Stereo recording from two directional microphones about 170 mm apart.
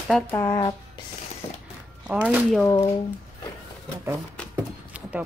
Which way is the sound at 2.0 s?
5° right (ahead or behind).